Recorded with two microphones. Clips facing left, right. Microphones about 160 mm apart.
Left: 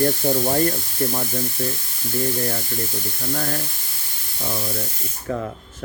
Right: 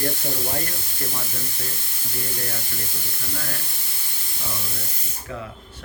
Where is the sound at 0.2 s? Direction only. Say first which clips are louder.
Left 10 dB; 50° left (ahead or behind).